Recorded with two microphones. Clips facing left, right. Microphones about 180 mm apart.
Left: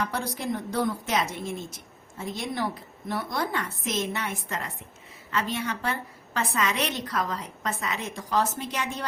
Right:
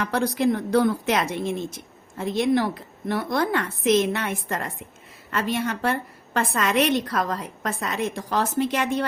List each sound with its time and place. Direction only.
0.0 s a woman's voice: 75° right (ahead or behind); by 9.0 s 55° right (ahead or behind)